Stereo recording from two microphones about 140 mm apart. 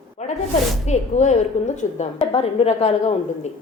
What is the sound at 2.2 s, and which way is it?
Speech, 45° left (ahead or behind).